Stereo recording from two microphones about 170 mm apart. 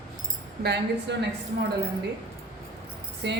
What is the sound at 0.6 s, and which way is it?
Speech, 85° right.